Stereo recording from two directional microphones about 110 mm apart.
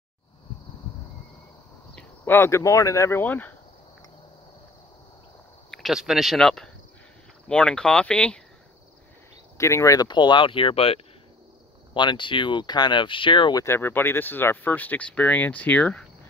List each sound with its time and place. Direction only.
2.0 s speech: 20° left (ahead or behind)
5.7 s speech: centre (ahead or behind)
9.6 s speech: 25° left (ahead or behind)
10.0 s speech: 45° left (ahead or behind); by 11.0 s 60° left (ahead or behind)
11.9 s speech: 45° left (ahead or behind)
13.7 s speech: 20° left (ahead or behind)